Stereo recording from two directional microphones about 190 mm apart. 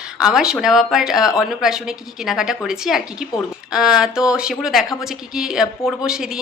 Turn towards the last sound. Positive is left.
turn(degrees=-5)  # may be behind; listen again after turning